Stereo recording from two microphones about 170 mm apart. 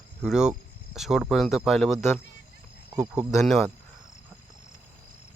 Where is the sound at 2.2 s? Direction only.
90° left.